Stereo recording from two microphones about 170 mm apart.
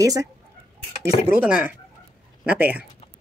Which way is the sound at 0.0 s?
20° right (ahead or behind).